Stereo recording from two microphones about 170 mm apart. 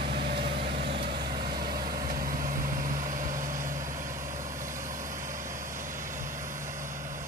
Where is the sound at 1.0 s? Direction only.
60° right (ahead or behind).